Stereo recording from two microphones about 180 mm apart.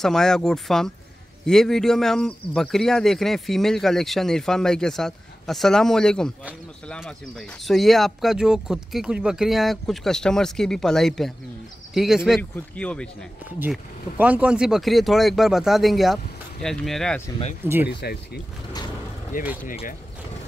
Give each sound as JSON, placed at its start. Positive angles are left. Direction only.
{"t": 0.0, "sound": "speech", "side_deg": 5}
{"t": 13.6, "sound": "speech", "side_deg": -10}
{"t": 17.8, "sound": "speech", "side_deg": 60}
{"t": 19.3, "sound": "speech", "side_deg": 50}